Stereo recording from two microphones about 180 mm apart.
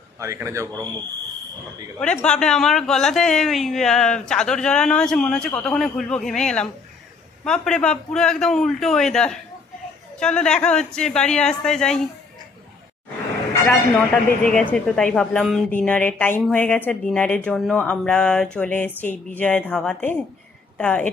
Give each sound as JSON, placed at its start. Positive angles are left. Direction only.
{"t": 0.2, "sound": "a man's voice", "side_deg": -15}
{"t": 2.0, "sound": "speech", "side_deg": 5}
{"t": 13.7, "sound": "speech", "side_deg": 10}